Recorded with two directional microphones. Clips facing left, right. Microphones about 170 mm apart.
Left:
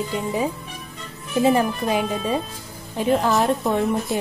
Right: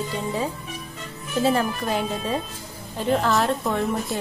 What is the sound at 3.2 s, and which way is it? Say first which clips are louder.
Speech: left 2 dB; 20° left (ahead or behind).